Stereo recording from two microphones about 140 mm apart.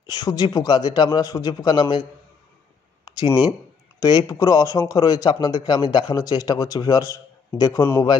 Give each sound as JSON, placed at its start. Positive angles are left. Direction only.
{"t": 0.0, "sound": "a man's voice", "side_deg": 30}
{"t": 3.1, "sound": "a sound", "side_deg": 25}
{"t": 4.0, "sound": "a man's voice", "side_deg": 25}